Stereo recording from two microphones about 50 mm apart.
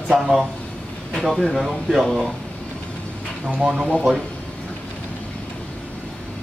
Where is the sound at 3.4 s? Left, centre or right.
Centre.